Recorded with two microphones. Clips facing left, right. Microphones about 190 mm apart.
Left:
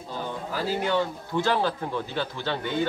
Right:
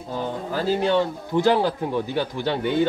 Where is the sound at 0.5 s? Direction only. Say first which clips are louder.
Right 5 dB; 20° right (ahead or behind).